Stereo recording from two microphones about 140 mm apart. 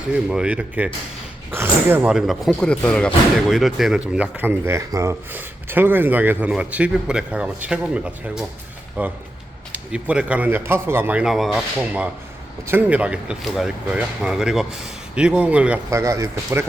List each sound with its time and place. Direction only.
0.3 s speech: 5° right (ahead or behind)
15.9 s speech: 20° right (ahead or behind)